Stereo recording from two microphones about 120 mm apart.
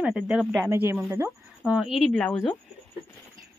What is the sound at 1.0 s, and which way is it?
Speech, 20° right (ahead or behind).